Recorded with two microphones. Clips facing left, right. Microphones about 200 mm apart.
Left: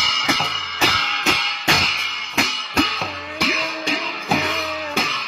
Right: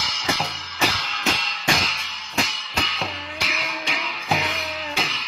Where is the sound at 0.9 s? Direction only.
70° left (ahead or behind).